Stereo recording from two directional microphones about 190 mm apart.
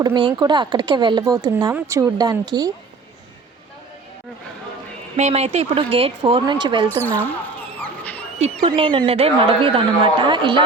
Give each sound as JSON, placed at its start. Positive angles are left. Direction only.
{"t": 0.0, "sound": "speech", "side_deg": -25}
{"t": 5.1, "sound": "speech", "side_deg": -35}
{"t": 6.8, "sound": "speech", "side_deg": 10}
{"t": 7.8, "sound": "dog", "side_deg": 10}
{"t": 8.6, "sound": "speech", "side_deg": -25}